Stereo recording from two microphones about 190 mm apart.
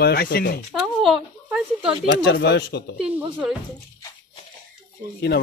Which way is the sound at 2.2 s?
65° left (ahead or behind).